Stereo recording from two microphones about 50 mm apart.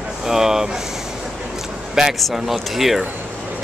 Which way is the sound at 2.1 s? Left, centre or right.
Centre.